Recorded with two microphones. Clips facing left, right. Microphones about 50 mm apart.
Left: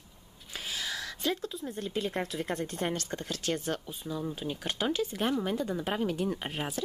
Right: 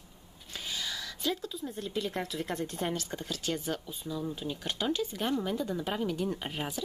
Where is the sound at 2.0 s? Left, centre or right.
Left.